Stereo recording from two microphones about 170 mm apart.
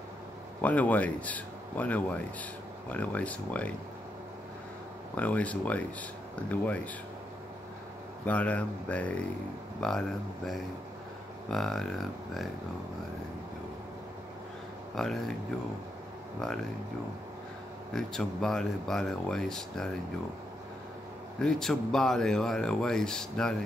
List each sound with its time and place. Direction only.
0.6 s speech: 10° left (ahead or behind)
5.1 s speech: 10° left (ahead or behind)
8.3 s speech: 10° left (ahead or behind)
15.0 s speech: 5° left (ahead or behind)
17.9 s speech: 5° left (ahead or behind)
21.4 s speech: 5° left (ahead or behind)